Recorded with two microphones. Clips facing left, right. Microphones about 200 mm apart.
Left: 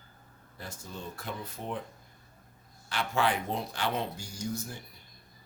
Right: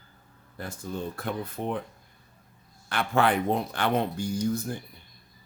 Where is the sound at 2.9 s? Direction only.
55° right (ahead or behind).